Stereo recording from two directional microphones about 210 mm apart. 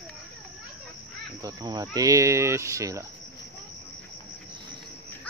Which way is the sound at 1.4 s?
15° right (ahead or behind).